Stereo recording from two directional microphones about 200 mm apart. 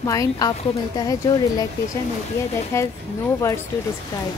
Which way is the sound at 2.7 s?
15° left (ahead or behind).